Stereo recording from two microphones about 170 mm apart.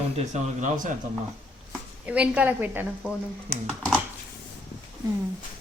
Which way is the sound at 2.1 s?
5° right (ahead or behind).